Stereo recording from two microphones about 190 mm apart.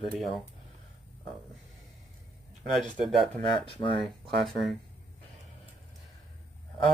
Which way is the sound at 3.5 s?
25° left (ahead or behind).